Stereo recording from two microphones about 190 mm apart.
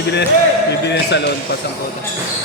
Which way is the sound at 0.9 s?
65° left (ahead or behind).